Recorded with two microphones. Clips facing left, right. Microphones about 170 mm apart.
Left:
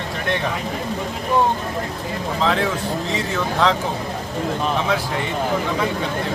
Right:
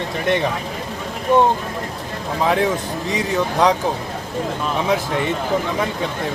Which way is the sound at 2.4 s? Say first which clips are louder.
Right 3 dB; 15° right (ahead or behind).